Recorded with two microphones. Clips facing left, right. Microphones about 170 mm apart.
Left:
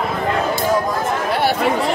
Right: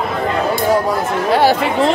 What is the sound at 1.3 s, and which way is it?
Chatter, 90° right.